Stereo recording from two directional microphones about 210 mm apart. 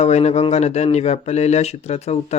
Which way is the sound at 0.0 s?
30° left (ahead or behind).